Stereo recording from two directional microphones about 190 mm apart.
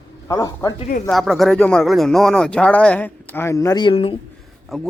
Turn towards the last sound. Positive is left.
turn(degrees=0)  # may be behind; listen again after turning